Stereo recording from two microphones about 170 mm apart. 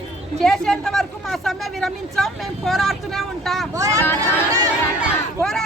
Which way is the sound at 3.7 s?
20° right (ahead or behind).